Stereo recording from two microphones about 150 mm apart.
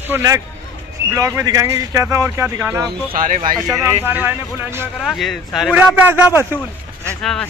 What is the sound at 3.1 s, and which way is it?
Speech, 60° right (ahead or behind).